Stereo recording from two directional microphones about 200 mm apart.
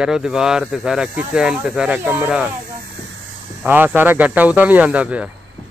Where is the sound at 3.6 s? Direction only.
10° right (ahead or behind).